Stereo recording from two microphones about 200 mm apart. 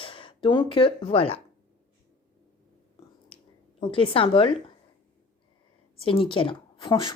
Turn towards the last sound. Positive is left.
turn(degrees=25)  # may be behind; listen again after turning